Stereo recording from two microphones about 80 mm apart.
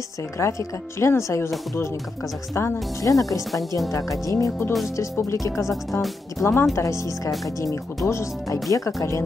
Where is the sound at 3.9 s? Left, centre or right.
Left.